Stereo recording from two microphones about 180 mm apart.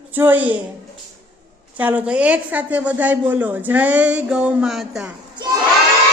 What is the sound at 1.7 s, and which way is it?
A man's voice, 10° right (ahead or behind).